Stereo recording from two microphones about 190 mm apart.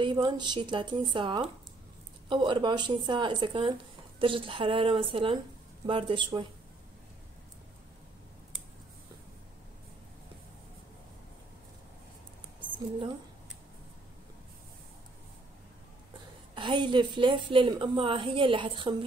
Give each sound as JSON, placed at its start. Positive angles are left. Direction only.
{"t": 0.0, "sound": "a woman's voice", "side_deg": -25}
{"t": 12.5, "sound": "a sound", "side_deg": -25}
{"t": 16.5, "sound": "a woman's voice", "side_deg": -25}